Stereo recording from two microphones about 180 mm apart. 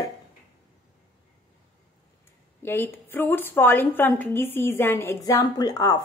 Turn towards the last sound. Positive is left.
turn(degrees=20)  # may be behind; listen again after turning